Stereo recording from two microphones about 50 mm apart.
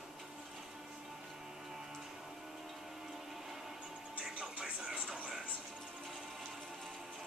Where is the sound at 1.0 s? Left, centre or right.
Centre.